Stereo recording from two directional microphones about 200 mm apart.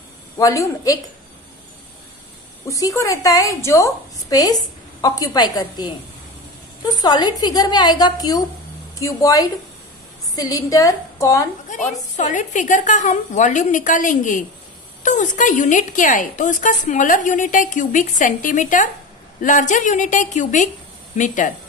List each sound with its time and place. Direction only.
0.4 s a woman's voice: 15° left (ahead or behind)
2.6 s a woman's voice: 15° left (ahead or behind)
11.7 s a woman's voice: 40° left (ahead or behind)